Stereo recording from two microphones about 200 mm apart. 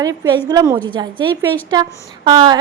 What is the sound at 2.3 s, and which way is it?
Speech, 20° right (ahead or behind).